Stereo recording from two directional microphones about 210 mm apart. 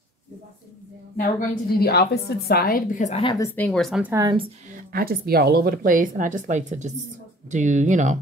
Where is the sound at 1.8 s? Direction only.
50° left (ahead or behind); by 4.1 s centre (ahead or behind).